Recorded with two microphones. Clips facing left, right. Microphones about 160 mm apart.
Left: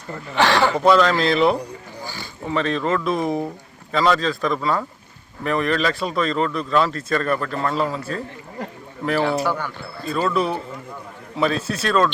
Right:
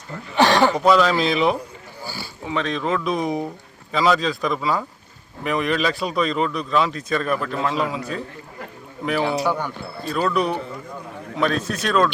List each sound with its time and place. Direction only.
0.3 s speech: 15° right (ahead or behind)
0.8 s a man's voice: centre (ahead or behind)
10.1 s a man's voice: centre (ahead or behind)